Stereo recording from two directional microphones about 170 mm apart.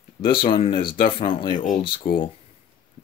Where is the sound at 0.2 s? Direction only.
30° left (ahead or behind).